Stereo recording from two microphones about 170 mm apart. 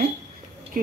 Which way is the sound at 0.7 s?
55° right (ahead or behind).